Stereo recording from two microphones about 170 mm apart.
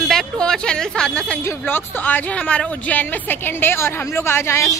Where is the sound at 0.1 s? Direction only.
5° left (ahead or behind).